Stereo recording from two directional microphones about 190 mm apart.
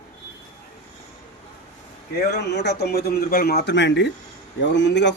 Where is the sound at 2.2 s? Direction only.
60° left (ahead or behind).